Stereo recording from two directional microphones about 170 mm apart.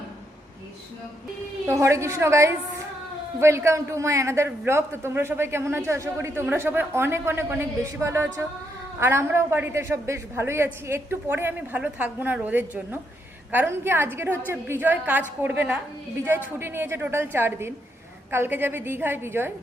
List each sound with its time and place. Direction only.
1.6 s a man's voice: 15° right (ahead or behind)